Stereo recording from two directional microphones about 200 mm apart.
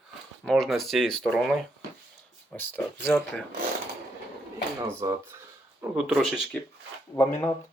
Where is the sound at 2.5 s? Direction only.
10° left (ahead or behind).